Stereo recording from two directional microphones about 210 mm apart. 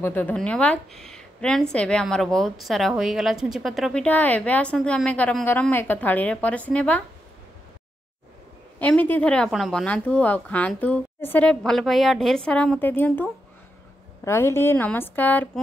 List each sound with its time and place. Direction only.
0.0 s speech: 10° left (ahead or behind)
8.7 s a woman's voice: 10° left (ahead or behind)